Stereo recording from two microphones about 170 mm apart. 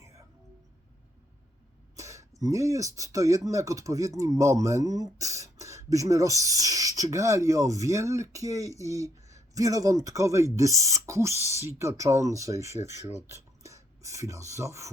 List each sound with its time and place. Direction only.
2.0 s a sound: 15° right (ahead or behind)
2.4 s speech: 20° right (ahead or behind)
13.3 s rub: 15° right (ahead or behind)